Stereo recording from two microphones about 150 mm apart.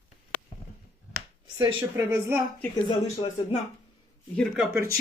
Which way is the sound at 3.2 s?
35° left (ahead or behind).